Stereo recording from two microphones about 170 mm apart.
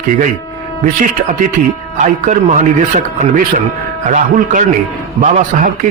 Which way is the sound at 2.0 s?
50° right (ahead or behind).